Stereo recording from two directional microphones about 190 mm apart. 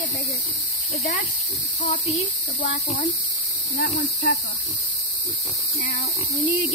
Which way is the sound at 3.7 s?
60° left (ahead or behind).